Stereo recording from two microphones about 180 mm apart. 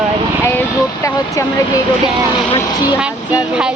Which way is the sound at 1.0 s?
20° left (ahead or behind).